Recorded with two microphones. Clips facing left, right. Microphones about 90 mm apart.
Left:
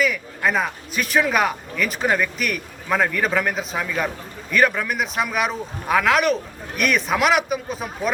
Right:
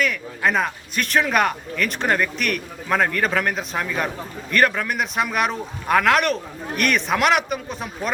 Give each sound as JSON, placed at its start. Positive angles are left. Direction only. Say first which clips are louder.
{"t": 0.0, "sound": "a man's voice", "louder": "even", "side_deg": 0}